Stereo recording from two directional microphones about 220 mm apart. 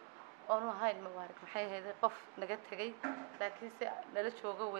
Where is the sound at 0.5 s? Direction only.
20° right (ahead or behind).